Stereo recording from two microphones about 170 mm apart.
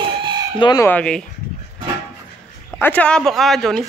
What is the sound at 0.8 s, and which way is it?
Speech, 5° left (ahead or behind).